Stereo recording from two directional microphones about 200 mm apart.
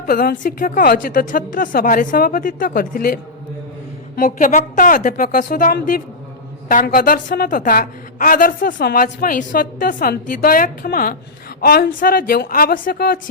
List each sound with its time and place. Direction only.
0.0 s a woman's voice: 45° left (ahead or behind)